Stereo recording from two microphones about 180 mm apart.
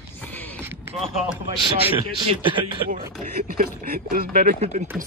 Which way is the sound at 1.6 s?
30° right (ahead or behind).